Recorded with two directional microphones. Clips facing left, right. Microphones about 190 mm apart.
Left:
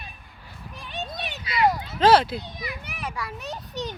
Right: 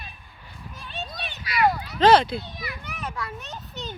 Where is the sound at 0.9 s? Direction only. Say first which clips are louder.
Left 3 dB; 20° left (ahead or behind).